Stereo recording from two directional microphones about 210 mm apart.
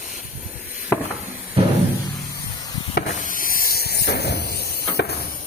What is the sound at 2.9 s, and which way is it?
Hiss, 40° left (ahead or behind).